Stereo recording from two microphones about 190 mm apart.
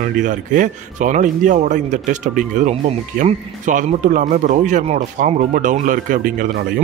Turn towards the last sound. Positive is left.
turn(degrees=-45)  # may be behind; listen again after turning